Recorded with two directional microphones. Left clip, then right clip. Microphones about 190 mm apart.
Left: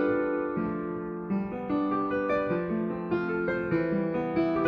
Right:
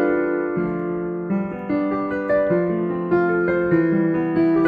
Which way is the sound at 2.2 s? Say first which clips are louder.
Right 9 dB; 25° right (ahead or behind).